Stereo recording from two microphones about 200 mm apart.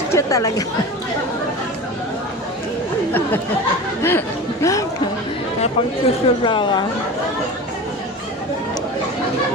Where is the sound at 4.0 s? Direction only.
10° left (ahead or behind).